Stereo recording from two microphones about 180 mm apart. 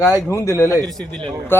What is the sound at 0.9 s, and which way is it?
Speech, 5° left (ahead or behind).